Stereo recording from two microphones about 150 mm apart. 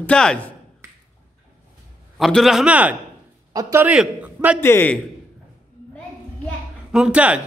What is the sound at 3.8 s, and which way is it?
Speech, 10° right (ahead or behind).